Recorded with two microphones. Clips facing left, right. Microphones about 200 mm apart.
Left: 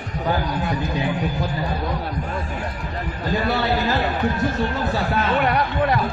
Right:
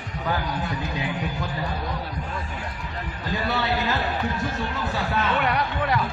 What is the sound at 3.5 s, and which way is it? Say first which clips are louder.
Speech: left 2 dB; 35° left (ahead or behind).